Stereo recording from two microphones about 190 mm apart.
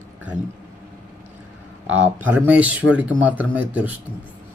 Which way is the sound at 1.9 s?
10° right (ahead or behind).